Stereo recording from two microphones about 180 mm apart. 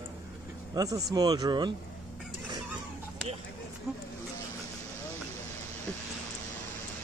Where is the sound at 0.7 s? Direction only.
20° right (ahead or behind).